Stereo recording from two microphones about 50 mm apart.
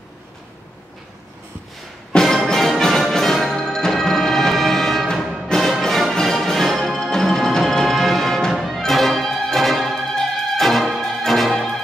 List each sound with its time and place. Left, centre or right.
2.2 s music: centre